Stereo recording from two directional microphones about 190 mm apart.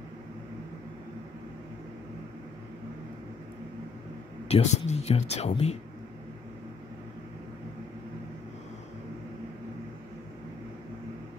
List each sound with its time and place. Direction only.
4.5 s speech: 35° left (ahead or behind)